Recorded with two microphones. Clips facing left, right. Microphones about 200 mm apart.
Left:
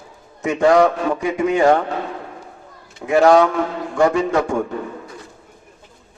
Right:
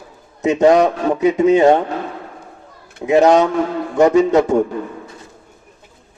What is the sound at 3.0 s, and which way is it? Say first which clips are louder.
A man's voice: right 1 dB; 20° right (ahead or behind).